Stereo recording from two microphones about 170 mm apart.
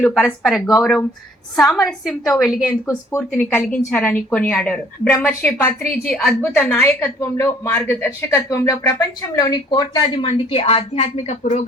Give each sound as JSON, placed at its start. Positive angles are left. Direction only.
{"t": 0.0, "sound": "a woman's voice", "side_deg": 5}
{"t": 2.8, "sound": "speech", "side_deg": 15}